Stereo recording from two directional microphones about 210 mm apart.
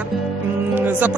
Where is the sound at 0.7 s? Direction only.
10° right (ahead or behind).